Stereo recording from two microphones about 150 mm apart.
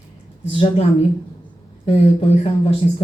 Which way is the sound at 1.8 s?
40° left (ahead or behind).